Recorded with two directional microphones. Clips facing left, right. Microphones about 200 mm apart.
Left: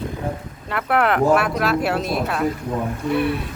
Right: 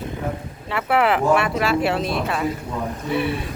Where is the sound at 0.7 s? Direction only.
Centre (ahead or behind).